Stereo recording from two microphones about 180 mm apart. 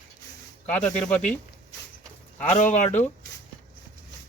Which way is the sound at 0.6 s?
5° left (ahead or behind).